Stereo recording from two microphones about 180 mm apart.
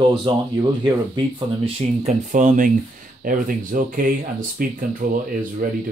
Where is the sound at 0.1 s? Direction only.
25° right (ahead or behind).